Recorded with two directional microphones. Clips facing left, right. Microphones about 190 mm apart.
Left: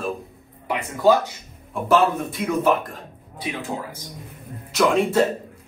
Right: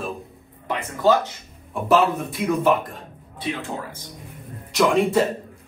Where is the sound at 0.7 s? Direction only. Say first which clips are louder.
Left 2 dB; 15° left (ahead or behind).